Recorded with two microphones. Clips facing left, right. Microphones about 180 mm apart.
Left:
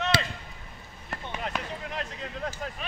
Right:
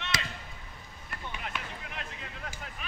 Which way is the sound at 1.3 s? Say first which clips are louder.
Left 6 dB; 40° left (ahead or behind).